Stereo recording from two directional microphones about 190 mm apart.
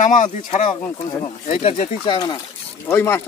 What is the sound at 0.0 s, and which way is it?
Speech, 40° left (ahead or behind).